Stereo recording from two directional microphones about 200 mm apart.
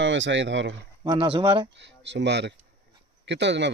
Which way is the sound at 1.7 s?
60° right (ahead or behind).